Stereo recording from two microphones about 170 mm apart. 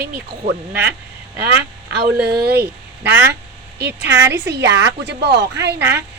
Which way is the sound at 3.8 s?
85° right.